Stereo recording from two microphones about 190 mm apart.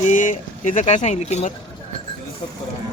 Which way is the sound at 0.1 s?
40° left (ahead or behind).